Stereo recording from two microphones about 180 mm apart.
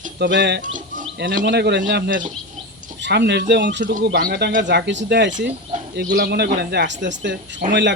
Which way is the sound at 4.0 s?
60° right (ahead or behind).